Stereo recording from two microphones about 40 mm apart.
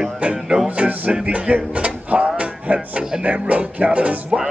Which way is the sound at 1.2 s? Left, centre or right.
Right.